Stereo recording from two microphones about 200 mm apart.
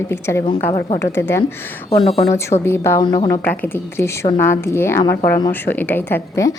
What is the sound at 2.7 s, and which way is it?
Speech, 10° left (ahead or behind).